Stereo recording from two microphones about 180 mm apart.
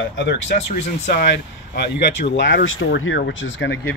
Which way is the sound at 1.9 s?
80° left.